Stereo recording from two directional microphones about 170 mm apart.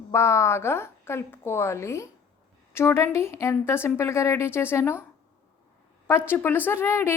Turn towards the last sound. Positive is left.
turn(degrees=15)  # may be behind; listen again after turning